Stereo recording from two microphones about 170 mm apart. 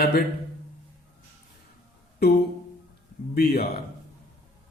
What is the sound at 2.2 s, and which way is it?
Speech, 70° left (ahead or behind).